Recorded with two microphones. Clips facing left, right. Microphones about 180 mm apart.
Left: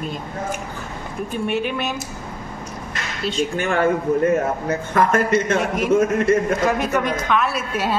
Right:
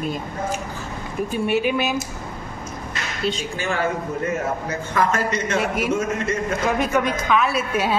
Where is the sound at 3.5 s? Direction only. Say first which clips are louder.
Left 5 dB; 55° left (ahead or behind).